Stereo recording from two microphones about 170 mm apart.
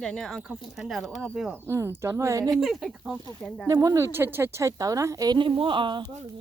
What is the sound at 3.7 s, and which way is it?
A woman's voice, 20° right (ahead or behind).